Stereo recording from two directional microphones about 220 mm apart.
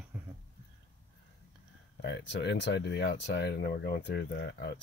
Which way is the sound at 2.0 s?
50° left (ahead or behind).